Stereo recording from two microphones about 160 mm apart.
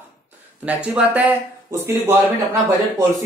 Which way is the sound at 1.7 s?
20° right (ahead or behind).